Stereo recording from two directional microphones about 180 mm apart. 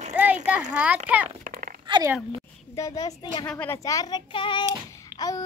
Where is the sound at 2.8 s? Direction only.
20° left (ahead or behind).